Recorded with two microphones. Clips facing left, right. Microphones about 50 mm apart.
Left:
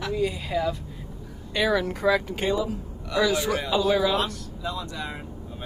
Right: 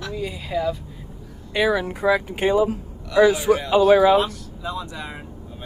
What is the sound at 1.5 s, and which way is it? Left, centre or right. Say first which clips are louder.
Speech: right 3 dB; centre.